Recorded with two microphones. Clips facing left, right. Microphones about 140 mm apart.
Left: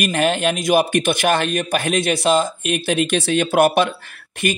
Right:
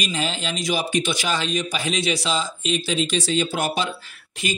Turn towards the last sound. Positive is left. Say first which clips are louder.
# left 6 dB
turn(degrees=60)  # may be behind; listen again after turning